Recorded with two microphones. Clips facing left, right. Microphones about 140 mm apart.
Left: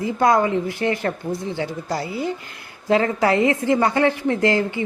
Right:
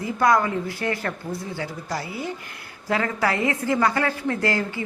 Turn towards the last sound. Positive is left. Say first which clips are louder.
# left 5 dB
turn(degrees=20)  # may be behind; listen again after turning